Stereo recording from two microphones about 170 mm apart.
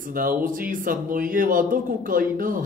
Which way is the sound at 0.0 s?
55° right (ahead or behind).